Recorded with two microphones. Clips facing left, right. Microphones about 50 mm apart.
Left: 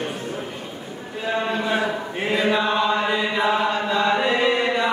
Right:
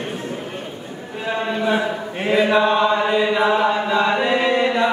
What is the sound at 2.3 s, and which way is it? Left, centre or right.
Chant, centre.